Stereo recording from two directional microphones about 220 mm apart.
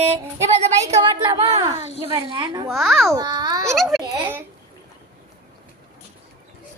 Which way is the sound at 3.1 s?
15° right (ahead or behind).